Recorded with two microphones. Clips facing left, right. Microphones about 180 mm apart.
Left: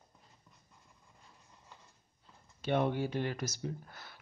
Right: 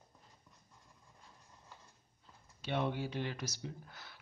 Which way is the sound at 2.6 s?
50° left (ahead or behind).